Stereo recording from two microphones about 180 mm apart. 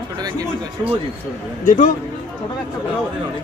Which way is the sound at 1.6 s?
45° left (ahead or behind).